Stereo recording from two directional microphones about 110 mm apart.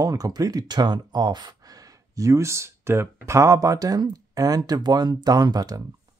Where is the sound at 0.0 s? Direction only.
35° right (ahead or behind).